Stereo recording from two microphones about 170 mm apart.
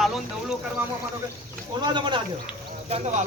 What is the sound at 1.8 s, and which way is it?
Speech, 25° right (ahead or behind).